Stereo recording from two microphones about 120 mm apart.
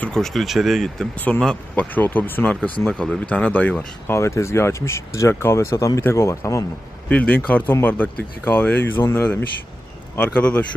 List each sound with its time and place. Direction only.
0.0 s speech: 5° left (ahead or behind)
4.0 s speech: 25° left (ahead or behind)
7.1 s speech: 10° left (ahead or behind)